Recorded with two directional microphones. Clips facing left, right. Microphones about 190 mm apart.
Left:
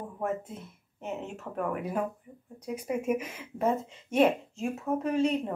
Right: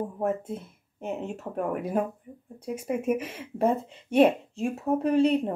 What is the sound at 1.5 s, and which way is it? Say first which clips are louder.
A woman's voice: right 2 dB; 30° right (ahead or behind).